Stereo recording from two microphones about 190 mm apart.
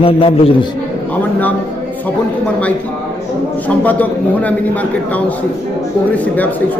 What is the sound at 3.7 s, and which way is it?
A man's voice, 10° left (ahead or behind).